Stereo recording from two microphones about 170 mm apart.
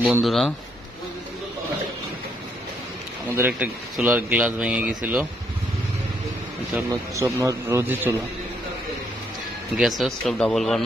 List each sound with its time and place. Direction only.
0.0 s speech: 5° right (ahead or behind)
3.3 s a man's voice: 10° right (ahead or behind)
6.9 s a man's voice: 20° right (ahead or behind)
9.8 s speech: centre (ahead or behind)